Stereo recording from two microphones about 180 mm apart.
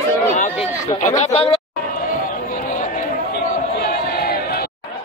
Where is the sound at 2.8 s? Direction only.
55° left (ahead or behind).